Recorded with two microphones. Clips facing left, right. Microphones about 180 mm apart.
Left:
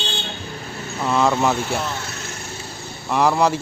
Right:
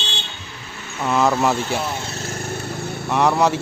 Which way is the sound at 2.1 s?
40° right (ahead or behind).